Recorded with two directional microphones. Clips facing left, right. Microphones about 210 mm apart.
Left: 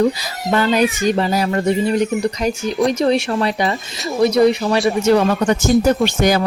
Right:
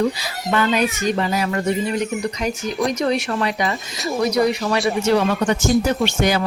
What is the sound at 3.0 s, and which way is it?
Speech, 30° left (ahead or behind).